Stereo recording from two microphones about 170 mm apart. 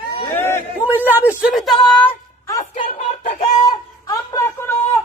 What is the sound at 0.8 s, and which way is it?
Speech, 10° right (ahead or behind).